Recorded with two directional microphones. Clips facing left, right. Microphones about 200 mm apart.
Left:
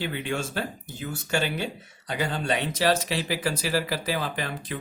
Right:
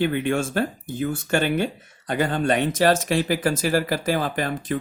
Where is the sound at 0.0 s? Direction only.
55° right (ahead or behind).